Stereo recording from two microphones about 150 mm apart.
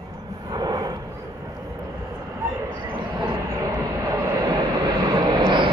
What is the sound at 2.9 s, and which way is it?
Vehicle, 30° right (ahead or behind).